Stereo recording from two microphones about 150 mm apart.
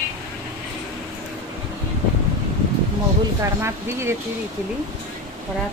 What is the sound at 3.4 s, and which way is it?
Speech, 20° right (ahead or behind).